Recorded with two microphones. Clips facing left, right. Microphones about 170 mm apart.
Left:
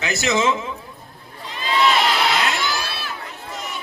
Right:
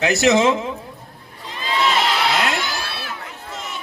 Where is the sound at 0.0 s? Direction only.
70° right (ahead or behind).